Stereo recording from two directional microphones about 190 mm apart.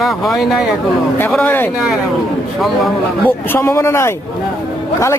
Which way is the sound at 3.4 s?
10° left (ahead or behind).